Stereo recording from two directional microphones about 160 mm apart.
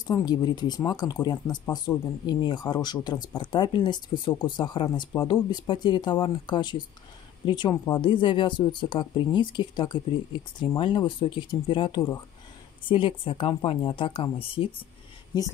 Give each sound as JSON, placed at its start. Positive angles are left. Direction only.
{"t": 0.0, "sound": "speech", "side_deg": 25}